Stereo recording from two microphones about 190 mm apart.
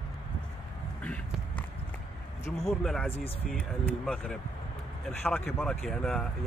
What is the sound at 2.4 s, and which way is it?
Speech, 35° left (ahead or behind).